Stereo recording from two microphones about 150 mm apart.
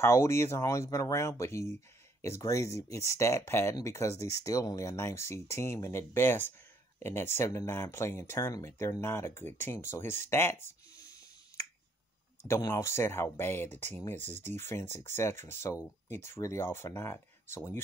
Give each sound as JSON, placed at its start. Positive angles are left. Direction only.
{"t": 0.0, "sound": "speech", "side_deg": 20}